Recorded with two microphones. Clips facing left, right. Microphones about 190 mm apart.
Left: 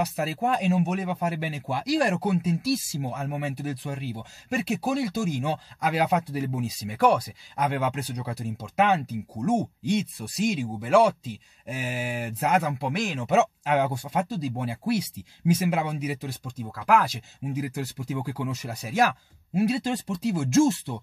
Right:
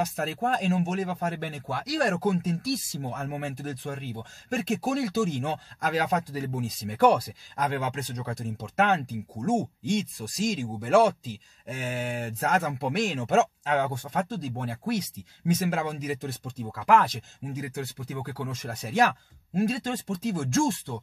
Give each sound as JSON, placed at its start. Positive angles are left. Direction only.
{"t": 0.1, "sound": "speech", "side_deg": 5}
{"t": 10.3, "sound": "speech", "side_deg": 65}
{"t": 10.6, "sound": "speech", "side_deg": 0}
{"t": 18.7, "sound": "speech", "side_deg": 0}